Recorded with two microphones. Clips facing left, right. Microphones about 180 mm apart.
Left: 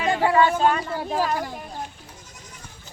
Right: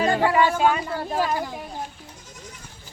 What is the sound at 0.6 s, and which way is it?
Speech, 5° right (ahead or behind).